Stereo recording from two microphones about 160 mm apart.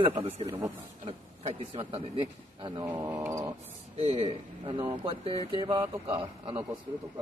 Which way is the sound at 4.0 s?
35° right (ahead or behind).